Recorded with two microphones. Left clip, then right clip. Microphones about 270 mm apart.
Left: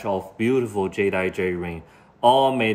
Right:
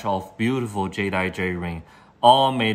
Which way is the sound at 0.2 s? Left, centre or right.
Right.